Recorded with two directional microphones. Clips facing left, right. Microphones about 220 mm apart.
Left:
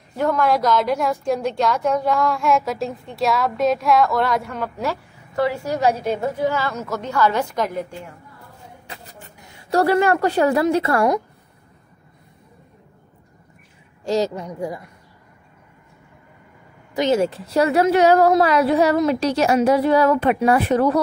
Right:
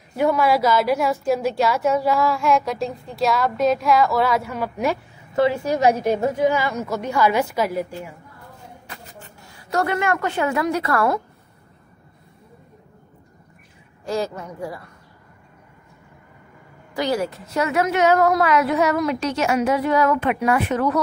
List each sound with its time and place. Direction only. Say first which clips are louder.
0.1 s a woman's voice: right 1 dB; 10° right (ahead or behind)
4.7 s a woman's voice: right 3 dB; 20° right (ahead or behind)
8.8 s a woman's voice: left 1 dB; 25° left (ahead or behind)
14.2 s a woman's voice: left 4 dB; 15° left (ahead or behind)
16.9 s a woman's voice: left 4 dB; 20° left (ahead or behind)